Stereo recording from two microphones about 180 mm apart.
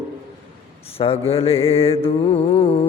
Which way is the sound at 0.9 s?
35° left (ahead or behind).